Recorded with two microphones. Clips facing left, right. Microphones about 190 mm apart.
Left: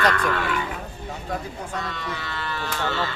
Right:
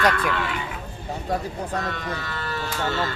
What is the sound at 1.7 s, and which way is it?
Speech, 50° right (ahead or behind).